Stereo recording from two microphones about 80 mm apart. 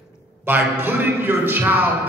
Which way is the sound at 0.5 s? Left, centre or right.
Right.